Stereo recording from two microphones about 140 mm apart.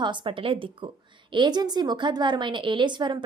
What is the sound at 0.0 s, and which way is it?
A woman's voice, 35° right (ahead or behind).